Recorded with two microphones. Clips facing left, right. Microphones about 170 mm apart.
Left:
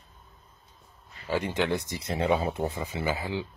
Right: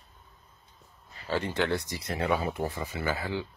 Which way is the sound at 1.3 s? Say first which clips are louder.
Left 1 dB; 15° left (ahead or behind).